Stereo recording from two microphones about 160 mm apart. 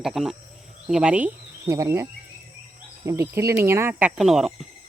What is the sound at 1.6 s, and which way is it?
Speech, 20° right (ahead or behind).